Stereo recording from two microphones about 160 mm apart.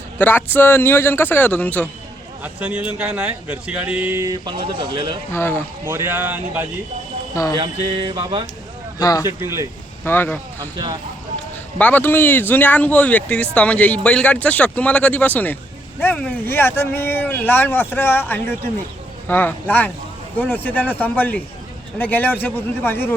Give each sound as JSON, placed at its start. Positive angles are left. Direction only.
{"t": 0.2, "sound": "speech", "side_deg": 10}
{"t": 2.4, "sound": "speech", "side_deg": -10}
{"t": 5.3, "sound": "speech", "side_deg": 15}
{"t": 5.8, "sound": "speech", "side_deg": -15}
{"t": 7.5, "sound": "mantra", "side_deg": -30}
{"t": 9.0, "sound": "speech", "side_deg": 25}
{"t": 9.2, "sound": "speech", "side_deg": -15}
{"t": 10.0, "sound": "speech", "side_deg": 10}
{"t": 11.8, "sound": "speech", "side_deg": 10}